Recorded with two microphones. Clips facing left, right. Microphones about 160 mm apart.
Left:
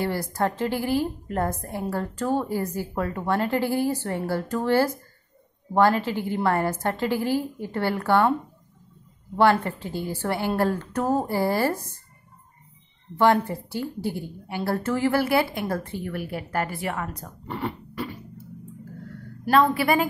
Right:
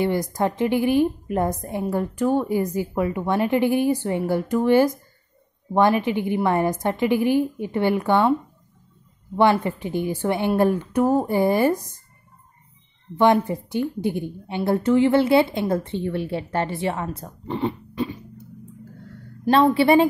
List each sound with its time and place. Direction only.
0.0 s a woman's voice: 15° right (ahead or behind)
9.4 s a woman's voice: 15° right (ahead or behind)
13.1 s speech: 20° right (ahead or behind)
19.4 s speech: 25° right (ahead or behind)